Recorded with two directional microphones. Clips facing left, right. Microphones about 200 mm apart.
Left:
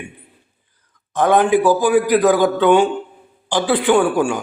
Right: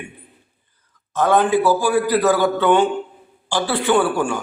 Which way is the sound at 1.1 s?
15° left (ahead or behind).